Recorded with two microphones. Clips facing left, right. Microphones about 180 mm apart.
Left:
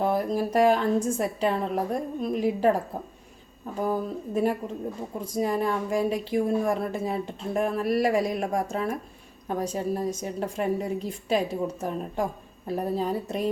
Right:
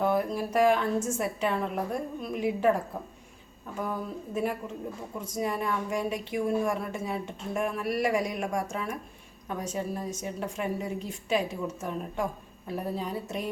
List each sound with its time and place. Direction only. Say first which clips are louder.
0.0 s speech: left 2 dB; 35° left (ahead or behind)